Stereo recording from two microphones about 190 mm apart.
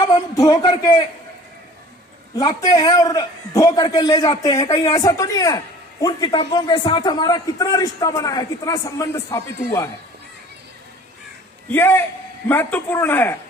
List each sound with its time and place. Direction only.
0.0 s a man's voice: 20° left (ahead or behind)
2.3 s a man's voice: 20° left (ahead or behind)
11.7 s a man's voice: 10° left (ahead or behind)